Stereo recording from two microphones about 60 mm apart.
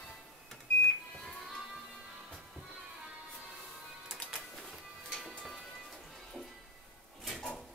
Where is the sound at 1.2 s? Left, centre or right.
Centre.